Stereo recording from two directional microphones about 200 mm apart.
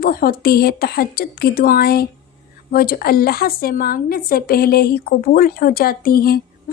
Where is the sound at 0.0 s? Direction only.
50° left (ahead or behind).